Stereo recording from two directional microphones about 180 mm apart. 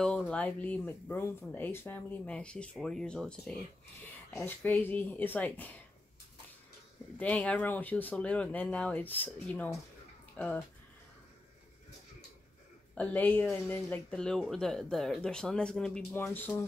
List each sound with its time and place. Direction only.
0.0 s speech: 5° left (ahead or behind)
7.2 s speech: 5° left (ahead or behind)
12.9 s speech: 10° left (ahead or behind)